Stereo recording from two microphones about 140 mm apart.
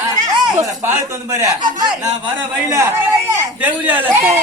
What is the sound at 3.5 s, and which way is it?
Speech, 15° right (ahead or behind).